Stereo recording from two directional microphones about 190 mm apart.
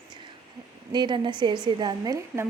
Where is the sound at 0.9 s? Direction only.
25° right (ahead or behind).